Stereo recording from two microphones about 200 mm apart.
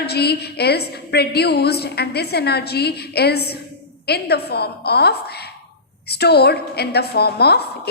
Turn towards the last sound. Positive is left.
turn(degrees=55)  # may be behind; listen again after turning